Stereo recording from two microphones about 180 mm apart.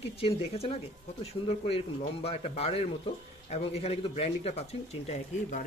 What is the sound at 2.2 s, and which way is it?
Speech, 35° left (ahead or behind).